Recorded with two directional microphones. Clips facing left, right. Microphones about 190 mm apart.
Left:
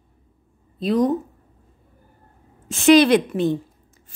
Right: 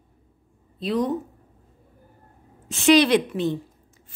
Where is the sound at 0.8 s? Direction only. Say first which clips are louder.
Left 5 dB; 45° left (ahead or behind).